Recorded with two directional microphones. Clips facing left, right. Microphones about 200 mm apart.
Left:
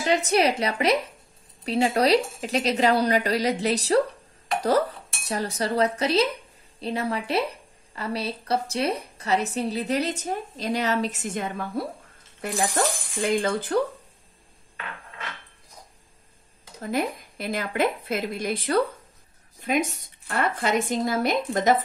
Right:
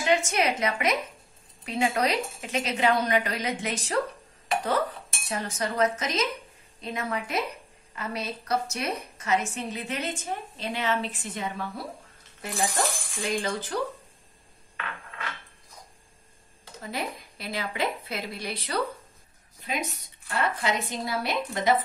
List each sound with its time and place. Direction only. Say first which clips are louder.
0.0 s a woman's voice: left 3 dB; 35° left (ahead or behind); by 13.7 s 55° left (ahead or behind)
16.8 s a woman's voice: left 7 dB; 50° left (ahead or behind)
20.2 s a woman's voice: left 3 dB; 50° left (ahead or behind)